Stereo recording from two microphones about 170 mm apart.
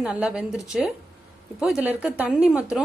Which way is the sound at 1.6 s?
5° right (ahead or behind).